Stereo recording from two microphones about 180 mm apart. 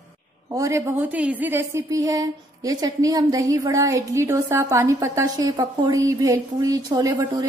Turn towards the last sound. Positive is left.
turn(degrees=-20)  # may be behind; listen again after turning